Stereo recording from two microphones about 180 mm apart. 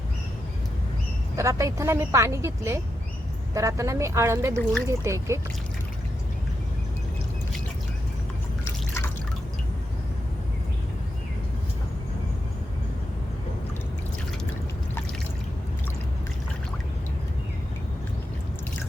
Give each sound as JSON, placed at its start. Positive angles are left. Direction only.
{"t": 1.4, "sound": "speech", "side_deg": -15}